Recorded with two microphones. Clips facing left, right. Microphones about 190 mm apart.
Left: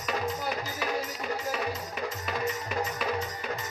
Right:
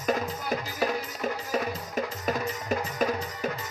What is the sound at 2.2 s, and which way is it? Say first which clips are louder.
Music: right 2 dB; 45° right (ahead or behind).